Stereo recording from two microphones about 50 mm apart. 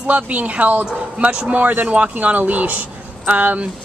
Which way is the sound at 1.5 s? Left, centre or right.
Right.